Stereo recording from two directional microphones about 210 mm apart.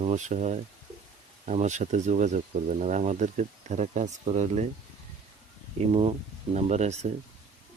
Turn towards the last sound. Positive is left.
turn(degrees=-30)  # may be behind; listen again after turning